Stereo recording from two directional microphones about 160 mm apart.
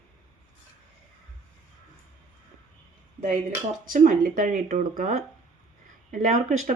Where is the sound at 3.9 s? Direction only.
55° right (ahead or behind).